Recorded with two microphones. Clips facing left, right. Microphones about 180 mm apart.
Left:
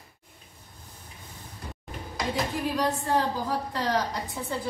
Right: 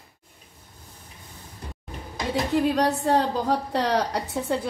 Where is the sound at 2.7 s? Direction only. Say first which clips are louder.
Right 5 dB; 75° right (ahead or behind).